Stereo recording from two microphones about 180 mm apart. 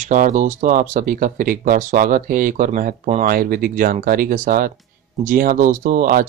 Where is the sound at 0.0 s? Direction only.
45° right (ahead or behind).